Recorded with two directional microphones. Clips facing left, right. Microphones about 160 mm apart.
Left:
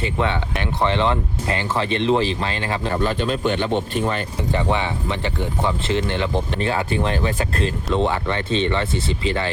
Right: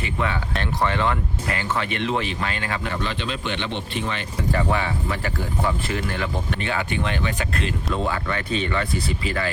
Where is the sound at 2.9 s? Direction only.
45° left (ahead or behind).